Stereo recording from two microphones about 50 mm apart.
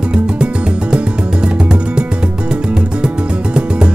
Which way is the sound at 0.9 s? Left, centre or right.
Centre.